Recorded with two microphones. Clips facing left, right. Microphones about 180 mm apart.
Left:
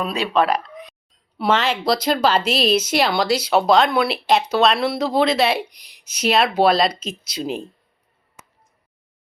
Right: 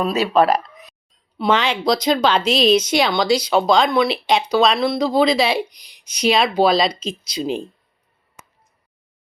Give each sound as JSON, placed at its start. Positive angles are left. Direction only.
{"t": 0.0, "sound": "speech", "side_deg": -5}
{"t": 0.5, "sound": "a sound", "side_deg": -45}
{"t": 1.4, "sound": "speech", "side_deg": 5}